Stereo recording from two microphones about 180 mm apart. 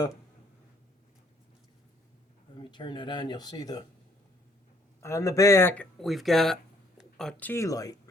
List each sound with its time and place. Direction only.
2.6 s speech: 25° left (ahead or behind)
4.9 s speech: 15° left (ahead or behind)